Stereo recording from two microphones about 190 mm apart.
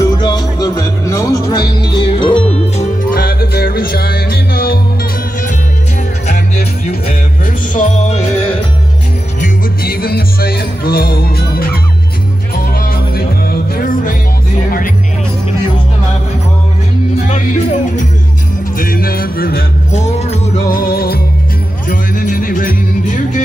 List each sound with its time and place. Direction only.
0.0 s music: 20° left (ahead or behind); by 4.7 s 50° left (ahead or behind)
6.2 s music: 35° left (ahead or behind)
7.7 s music: 40° left (ahead or behind)
9.4 s music: 50° left (ahead or behind)
17.3 s music: 35° left (ahead or behind)
18.8 s music: 50° left (ahead or behind)
20.7 s music: 50° left (ahead or behind)